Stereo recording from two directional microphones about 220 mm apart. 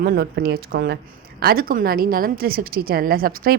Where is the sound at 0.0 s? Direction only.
45° right (ahead or behind).